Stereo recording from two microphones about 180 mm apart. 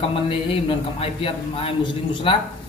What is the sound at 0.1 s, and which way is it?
A man's voice, 30° left (ahead or behind).